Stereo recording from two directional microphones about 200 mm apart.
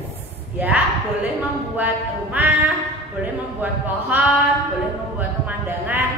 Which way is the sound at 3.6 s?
10° right (ahead or behind).